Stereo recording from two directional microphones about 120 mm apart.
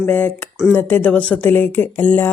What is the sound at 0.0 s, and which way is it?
Speech, 15° left (ahead or behind).